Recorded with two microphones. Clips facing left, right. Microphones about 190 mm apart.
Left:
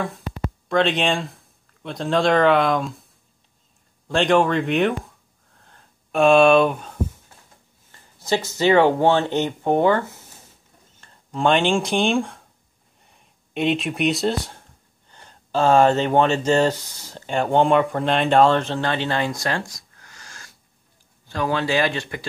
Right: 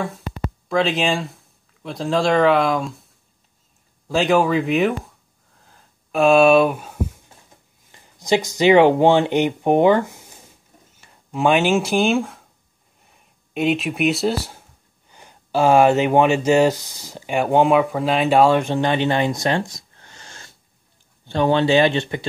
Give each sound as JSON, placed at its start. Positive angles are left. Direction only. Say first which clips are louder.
{"t": 0.7, "sound": "speech", "louder": "even", "side_deg": 0}
{"t": 4.1, "sound": "a sound", "louder": "right 1 dB", "side_deg": -5}
{"t": 7.9, "sound": "speech", "louder": "right 4 dB", "side_deg": -15}